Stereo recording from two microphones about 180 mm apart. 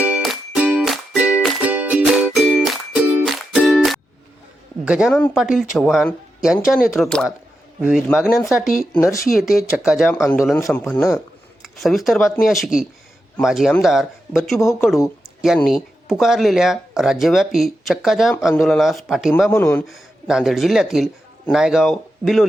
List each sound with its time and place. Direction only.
0.0 s music: 5° right (ahead or behind)
4.9 s a man's voice: 5° right (ahead or behind)
9.0 s a man's voice: 15° left (ahead or behind)
9.2 s speech: centre (ahead or behind)
10.1 s a man's voice: 15° left (ahead or behind)
11.6 s speech: centre (ahead or behind)
19.5 s a man's voice: 15° left (ahead or behind)
19.9 s speech: centre (ahead or behind)